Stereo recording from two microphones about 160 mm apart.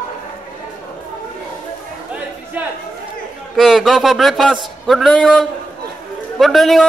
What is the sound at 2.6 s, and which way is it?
Chatter, 10° right (ahead or behind).